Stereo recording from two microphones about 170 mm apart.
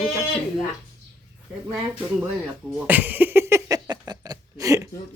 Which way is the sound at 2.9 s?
10° right (ahead or behind).